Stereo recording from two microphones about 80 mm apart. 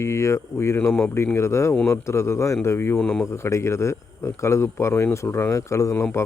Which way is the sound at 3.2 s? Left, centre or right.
Left.